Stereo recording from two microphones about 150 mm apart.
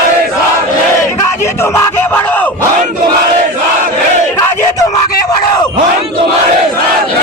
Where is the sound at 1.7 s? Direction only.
15° left (ahead or behind).